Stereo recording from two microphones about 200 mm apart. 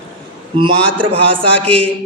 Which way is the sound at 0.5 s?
25° right (ahead or behind).